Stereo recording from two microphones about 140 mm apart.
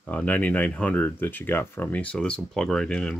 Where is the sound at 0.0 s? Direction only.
10° left (ahead or behind).